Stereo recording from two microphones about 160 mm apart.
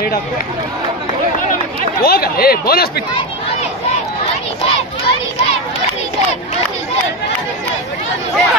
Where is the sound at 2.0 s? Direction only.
70° left (ahead or behind).